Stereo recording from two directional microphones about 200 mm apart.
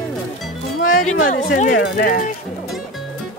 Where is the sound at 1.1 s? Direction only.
40° left (ahead or behind).